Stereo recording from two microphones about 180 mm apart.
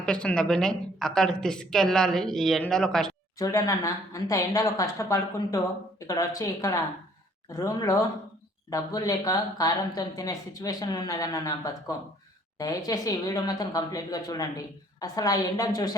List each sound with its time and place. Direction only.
0.0 s a woman's voice: 5° left (ahead or behind)
3.3 s speech: 20° left (ahead or behind)